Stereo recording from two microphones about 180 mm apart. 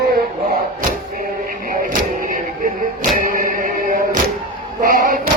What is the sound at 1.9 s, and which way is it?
Music, 50° right (ahead or behind).